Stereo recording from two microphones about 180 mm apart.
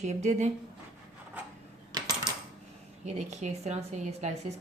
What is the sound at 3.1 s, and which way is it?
Speech, 40° right (ahead or behind).